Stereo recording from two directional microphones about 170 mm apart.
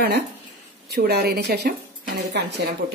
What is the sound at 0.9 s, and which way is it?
Speech, 70° right (ahead or behind).